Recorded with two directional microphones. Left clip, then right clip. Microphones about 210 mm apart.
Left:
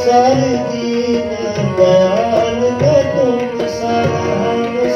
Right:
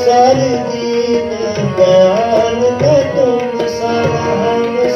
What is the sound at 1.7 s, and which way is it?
Tabla, 15° right (ahead or behind).